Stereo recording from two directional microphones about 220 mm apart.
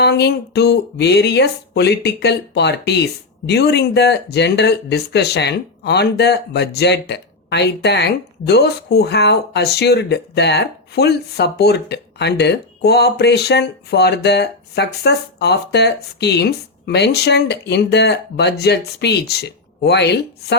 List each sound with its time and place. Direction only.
0.0 s speech: 50° left (ahead or behind)